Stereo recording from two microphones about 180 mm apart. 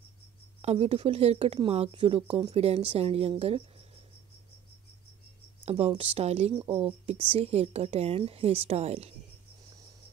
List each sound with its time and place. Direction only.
0.6 s speech: 35° right (ahead or behind)
5.7 s speech: 35° right (ahead or behind)